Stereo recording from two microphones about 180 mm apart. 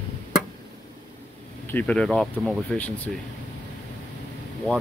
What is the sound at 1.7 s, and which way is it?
Speech, 10° left (ahead or behind).